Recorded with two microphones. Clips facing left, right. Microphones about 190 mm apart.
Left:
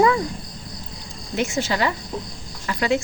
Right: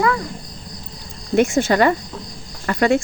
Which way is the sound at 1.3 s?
50° right (ahead or behind).